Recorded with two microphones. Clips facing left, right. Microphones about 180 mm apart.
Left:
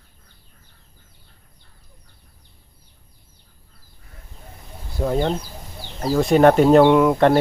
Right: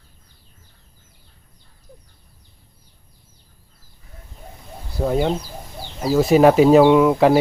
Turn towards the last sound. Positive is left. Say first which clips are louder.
# right 1 dB
turn(degrees=-5)  # may be behind; listen again after turning